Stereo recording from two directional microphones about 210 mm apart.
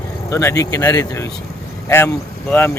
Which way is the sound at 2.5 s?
10° left (ahead or behind).